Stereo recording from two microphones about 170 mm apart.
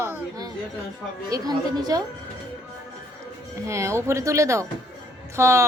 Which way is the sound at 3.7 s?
15° right (ahead or behind).